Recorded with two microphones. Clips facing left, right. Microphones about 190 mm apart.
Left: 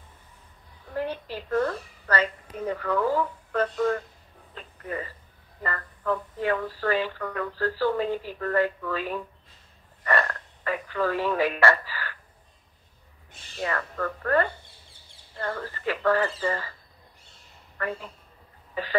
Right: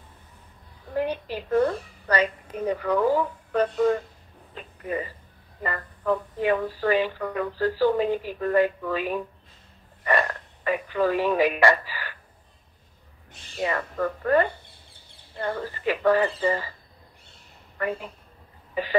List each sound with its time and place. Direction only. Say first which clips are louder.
0.9 s a woman's voice: right 4 dB; 15° right (ahead or behind)
13.6 s speech: right 3 dB; 15° right (ahead or behind)
17.7 s speech: right 3 dB; 15° right (ahead or behind)
18.8 s cough: right 4 dB; 15° right (ahead or behind)